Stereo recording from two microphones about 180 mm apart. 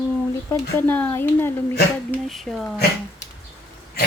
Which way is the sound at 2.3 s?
Centre (ahead or behind).